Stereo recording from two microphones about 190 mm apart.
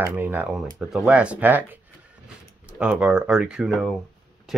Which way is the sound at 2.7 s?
5° right (ahead or behind).